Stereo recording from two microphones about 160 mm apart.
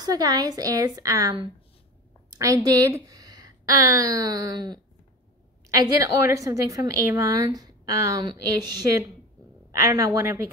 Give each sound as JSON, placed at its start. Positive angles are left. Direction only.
{"t": 0.0, "sound": "a woman's voice", "side_deg": -25}
{"t": 2.3, "sound": "a woman's voice", "side_deg": -20}